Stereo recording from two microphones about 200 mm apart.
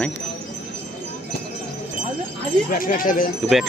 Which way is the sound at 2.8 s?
45° left (ahead or behind).